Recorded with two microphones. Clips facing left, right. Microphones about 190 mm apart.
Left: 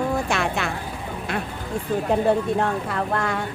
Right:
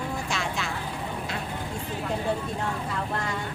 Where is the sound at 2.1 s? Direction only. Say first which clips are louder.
Left 9 dB; 60° left (ahead or behind).